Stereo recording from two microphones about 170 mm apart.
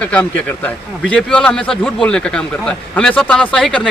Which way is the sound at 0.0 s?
10° left (ahead or behind).